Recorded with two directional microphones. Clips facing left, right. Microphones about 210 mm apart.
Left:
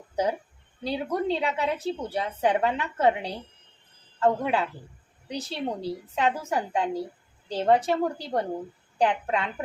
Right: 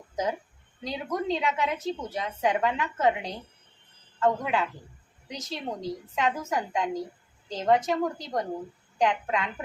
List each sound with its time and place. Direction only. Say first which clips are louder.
0.9 s a woman's voice: left 3 dB; 30° left (ahead or behind)